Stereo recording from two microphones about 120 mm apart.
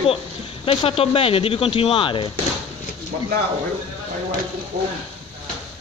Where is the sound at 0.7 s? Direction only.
55° left (ahead or behind).